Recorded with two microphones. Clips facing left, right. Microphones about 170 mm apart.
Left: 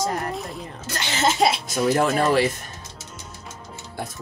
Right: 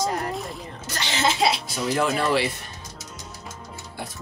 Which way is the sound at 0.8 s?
50° left (ahead or behind).